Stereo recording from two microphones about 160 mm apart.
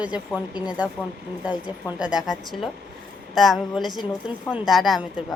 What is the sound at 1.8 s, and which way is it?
A woman's voice, 5° right (ahead or behind).